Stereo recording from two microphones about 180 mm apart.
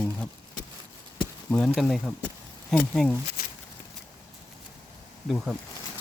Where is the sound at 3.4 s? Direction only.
55° left (ahead or behind).